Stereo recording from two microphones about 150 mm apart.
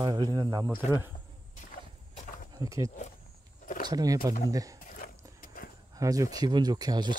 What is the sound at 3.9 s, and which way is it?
Speech, 25° right (ahead or behind).